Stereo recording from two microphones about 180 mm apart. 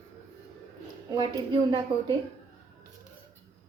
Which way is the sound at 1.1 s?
25° right (ahead or behind).